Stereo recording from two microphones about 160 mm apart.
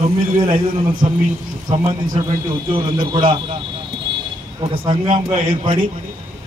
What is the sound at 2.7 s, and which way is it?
Speech, 30° right (ahead or behind).